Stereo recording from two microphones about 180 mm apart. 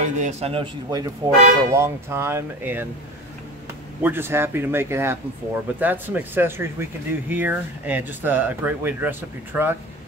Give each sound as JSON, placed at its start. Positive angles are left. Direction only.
{"t": 0.0, "sound": "a man's voice", "side_deg": -40}
{"t": 0.8, "sound": "speech", "side_deg": -20}
{"t": 4.0, "sound": "speech", "side_deg": -10}